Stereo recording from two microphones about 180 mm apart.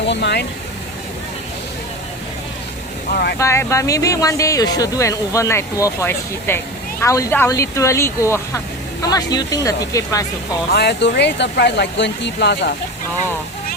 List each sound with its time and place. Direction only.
0.0 s vehicle: 75° left (ahead or behind)
3.3 s speech: 15° left (ahead or behind)
10.7 s speech: 70° left (ahead or behind)